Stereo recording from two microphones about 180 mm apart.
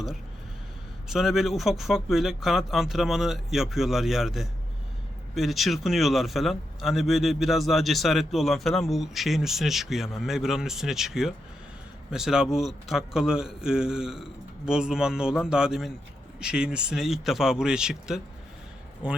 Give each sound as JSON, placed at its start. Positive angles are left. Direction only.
{"t": 1.0, "sound": "a man's voice", "side_deg": 0}